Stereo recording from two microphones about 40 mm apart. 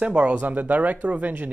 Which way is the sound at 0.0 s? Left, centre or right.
Right.